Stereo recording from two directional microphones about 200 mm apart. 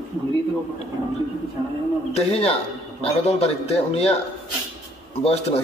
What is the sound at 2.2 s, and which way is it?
A man's voice, 30° left (ahead or behind).